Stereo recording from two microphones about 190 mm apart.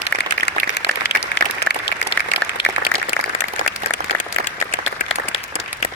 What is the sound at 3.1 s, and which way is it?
Applause, 35° left (ahead or behind).